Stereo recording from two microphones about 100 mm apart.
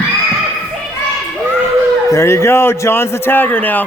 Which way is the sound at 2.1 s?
30° left (ahead or behind).